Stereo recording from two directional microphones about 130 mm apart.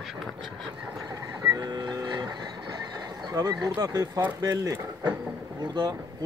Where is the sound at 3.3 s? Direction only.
30° right (ahead or behind).